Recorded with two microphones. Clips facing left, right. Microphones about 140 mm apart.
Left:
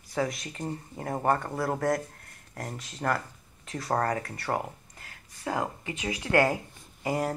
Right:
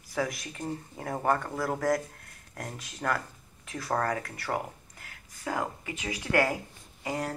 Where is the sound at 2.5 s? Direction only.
Centre (ahead or behind).